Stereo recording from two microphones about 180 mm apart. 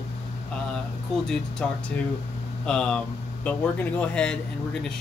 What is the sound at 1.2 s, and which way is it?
Speech, 5° left (ahead or behind).